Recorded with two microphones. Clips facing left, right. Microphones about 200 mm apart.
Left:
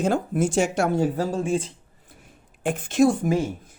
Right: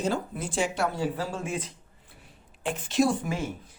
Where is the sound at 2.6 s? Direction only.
50° left (ahead or behind).